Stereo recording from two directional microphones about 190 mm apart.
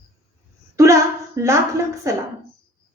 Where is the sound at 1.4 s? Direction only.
15° right (ahead or behind).